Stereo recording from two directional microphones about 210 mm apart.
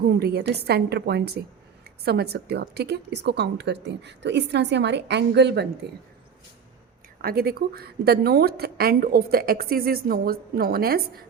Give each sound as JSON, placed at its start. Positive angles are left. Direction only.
{"t": 0.1, "sound": "a woman's voice", "side_deg": -50}
{"t": 7.2, "sound": "a woman's voice", "side_deg": -45}